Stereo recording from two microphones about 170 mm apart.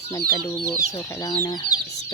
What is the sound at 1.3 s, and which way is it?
Speech, 25° left (ahead or behind).